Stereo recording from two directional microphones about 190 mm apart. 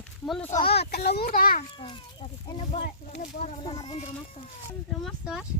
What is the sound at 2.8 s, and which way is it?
Speech, 55° left (ahead or behind).